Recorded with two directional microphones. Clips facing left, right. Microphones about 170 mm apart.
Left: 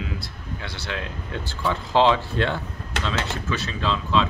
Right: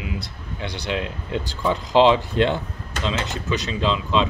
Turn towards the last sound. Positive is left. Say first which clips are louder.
# right 2 dB
turn(degrees=-20)  # may be behind; listen again after turning